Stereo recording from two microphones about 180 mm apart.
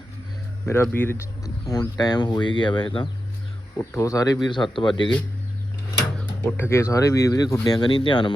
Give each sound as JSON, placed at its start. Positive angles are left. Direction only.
{"t": 0.6, "sound": "speech", "side_deg": 15}
{"t": 3.8, "sound": "speech", "side_deg": 15}
{"t": 6.1, "sound": "speech", "side_deg": 10}